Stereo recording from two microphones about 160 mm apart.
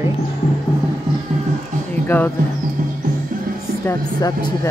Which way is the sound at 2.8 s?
55° right (ahead or behind).